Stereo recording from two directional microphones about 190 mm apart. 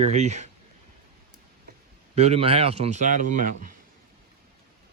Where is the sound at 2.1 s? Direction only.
35° right (ahead or behind).